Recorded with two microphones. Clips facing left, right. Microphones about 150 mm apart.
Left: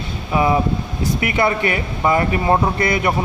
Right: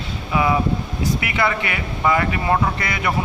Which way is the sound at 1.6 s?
35° left (ahead or behind).